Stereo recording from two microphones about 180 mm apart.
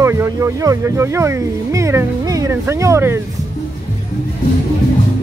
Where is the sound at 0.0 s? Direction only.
15° right (ahead or behind).